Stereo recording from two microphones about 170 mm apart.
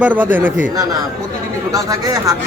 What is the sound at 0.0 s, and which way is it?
Speech, 10° right (ahead or behind).